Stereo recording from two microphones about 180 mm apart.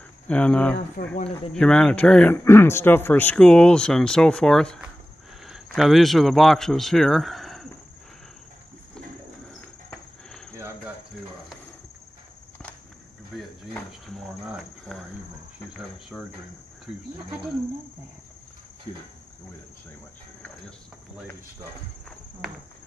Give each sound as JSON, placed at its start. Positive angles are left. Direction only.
{"t": 0.3, "sound": "speech", "side_deg": 10}
{"t": 1.0, "sound": "speech", "side_deg": 55}
{"t": 1.5, "sound": "speech", "side_deg": 5}
{"t": 9.6, "sound": "insect", "side_deg": 5}
{"t": 10.5, "sound": "cricket", "side_deg": -15}
{"t": 13.4, "sound": "cricket", "side_deg": 0}
{"t": 16.1, "sound": "speech", "side_deg": 5}